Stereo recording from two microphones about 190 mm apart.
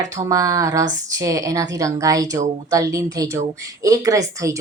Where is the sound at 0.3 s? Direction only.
15° right (ahead or behind).